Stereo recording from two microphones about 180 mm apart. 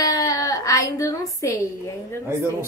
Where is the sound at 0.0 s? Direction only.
20° left (ahead or behind).